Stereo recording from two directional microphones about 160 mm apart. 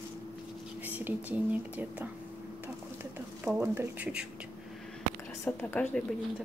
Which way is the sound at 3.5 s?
10° right (ahead or behind).